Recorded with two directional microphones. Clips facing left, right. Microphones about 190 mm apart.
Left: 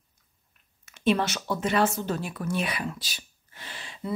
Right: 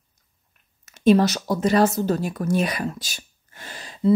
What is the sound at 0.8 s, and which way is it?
Speech, 40° right (ahead or behind).